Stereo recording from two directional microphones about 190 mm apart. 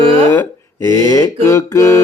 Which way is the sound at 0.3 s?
15° left (ahead or behind).